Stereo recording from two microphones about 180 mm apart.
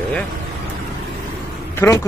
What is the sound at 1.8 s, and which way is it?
Speech, 15° left (ahead or behind).